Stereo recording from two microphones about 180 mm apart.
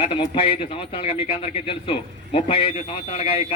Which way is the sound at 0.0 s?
30° left (ahead or behind).